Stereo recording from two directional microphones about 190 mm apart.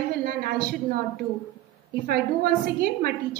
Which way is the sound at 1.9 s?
55° right (ahead or behind).